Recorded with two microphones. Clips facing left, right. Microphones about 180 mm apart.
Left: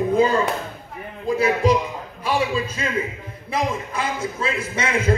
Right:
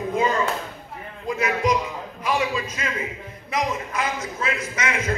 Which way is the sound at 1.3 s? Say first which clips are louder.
Left 4 dB; 30° left (ahead or behind).